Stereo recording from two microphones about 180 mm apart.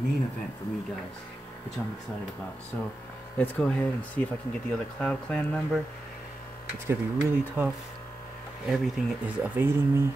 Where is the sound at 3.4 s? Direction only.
10° left (ahead or behind).